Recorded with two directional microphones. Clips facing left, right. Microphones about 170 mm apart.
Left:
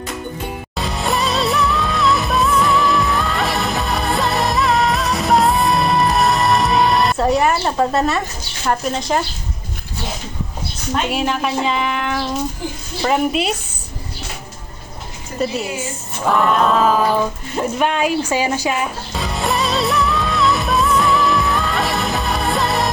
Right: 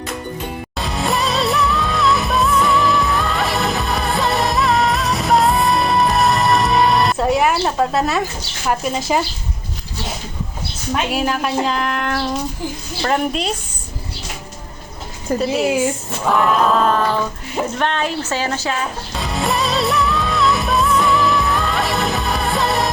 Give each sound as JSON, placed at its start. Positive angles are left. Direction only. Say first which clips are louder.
{"t": 0.8, "sound": "music", "louder": "even", "side_deg": 0}
{"t": 7.6, "sound": "a woman's voice", "louder": "left 1 dB", "side_deg": 0}
{"t": 10.9, "sound": "a woman's voice", "louder": "even", "side_deg": 0}
{"t": 15.3, "sound": "a woman's voice", "louder": "right 3 dB", "side_deg": -90}
{"t": 16.2, "sound": "a woman's voice", "louder": "even", "side_deg": 0}
{"t": 19.2, "sound": "music", "louder": "even", "side_deg": 0}